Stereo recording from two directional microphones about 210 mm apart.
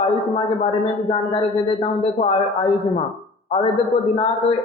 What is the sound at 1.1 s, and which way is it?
Speech, 25° left (ahead or behind).